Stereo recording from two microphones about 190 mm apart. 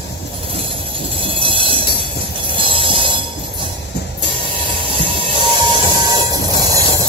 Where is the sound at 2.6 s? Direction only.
30° right (ahead or behind).